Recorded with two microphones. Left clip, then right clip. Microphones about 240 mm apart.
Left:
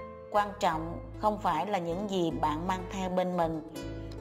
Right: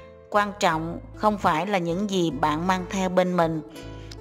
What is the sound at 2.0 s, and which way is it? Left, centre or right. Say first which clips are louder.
Speech: right 6 dB; right.